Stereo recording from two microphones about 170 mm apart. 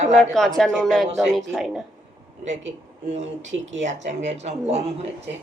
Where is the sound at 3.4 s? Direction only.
90° right.